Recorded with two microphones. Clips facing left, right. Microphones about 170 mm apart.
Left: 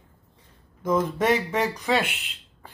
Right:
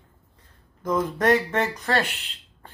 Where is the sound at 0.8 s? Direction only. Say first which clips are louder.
Left 1 dB; 5° left (ahead or behind).